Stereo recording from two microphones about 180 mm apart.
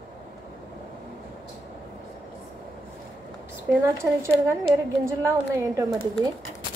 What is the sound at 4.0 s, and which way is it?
A woman's voice, 15° right (ahead or behind).